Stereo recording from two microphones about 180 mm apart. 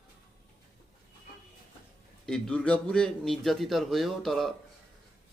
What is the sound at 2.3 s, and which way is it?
A man's voice, 5° left (ahead or behind).